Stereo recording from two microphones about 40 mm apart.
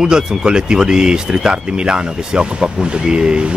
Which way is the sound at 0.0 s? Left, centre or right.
Centre.